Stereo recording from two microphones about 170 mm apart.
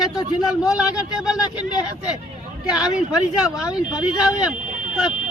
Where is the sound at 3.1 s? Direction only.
5° right (ahead or behind).